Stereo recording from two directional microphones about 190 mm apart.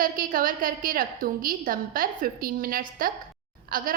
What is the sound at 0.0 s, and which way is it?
A woman's voice, 45° right (ahead or behind).